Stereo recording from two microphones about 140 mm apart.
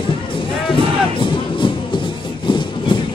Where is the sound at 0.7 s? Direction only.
35° left (ahead or behind).